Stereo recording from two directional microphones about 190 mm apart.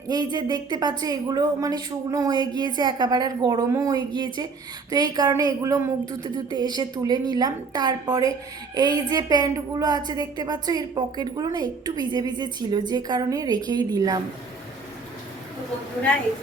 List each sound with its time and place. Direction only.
0.1 s a woman's voice: 20° right (ahead or behind)